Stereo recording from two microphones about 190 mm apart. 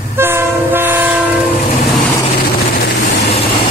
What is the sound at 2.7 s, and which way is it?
Vehicle, 50° left (ahead or behind).